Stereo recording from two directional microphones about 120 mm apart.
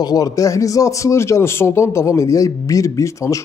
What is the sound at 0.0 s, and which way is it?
Speech, 30° left (ahead or behind).